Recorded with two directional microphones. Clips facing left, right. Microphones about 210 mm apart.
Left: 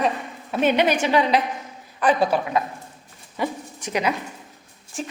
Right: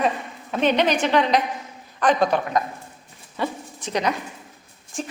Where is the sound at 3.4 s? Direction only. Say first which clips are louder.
Left 1 dB; 10° left (ahead or behind).